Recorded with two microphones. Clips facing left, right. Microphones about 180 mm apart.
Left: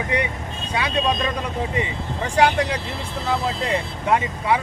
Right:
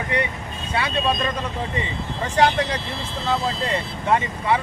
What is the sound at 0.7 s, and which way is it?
Speech, 15° left (ahead or behind).